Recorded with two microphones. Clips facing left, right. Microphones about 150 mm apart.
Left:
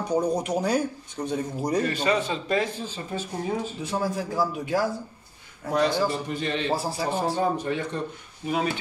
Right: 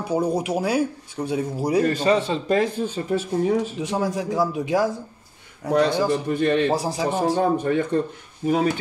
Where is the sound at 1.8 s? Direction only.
40° right (ahead or behind); by 3.7 s 65° right (ahead or behind).